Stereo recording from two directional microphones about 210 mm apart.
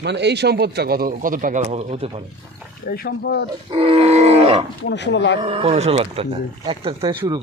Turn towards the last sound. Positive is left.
turn(degrees=-20)  # may be behind; listen again after turning